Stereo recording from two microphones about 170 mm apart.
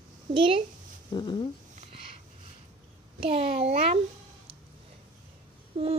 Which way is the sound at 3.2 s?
35° right (ahead or behind).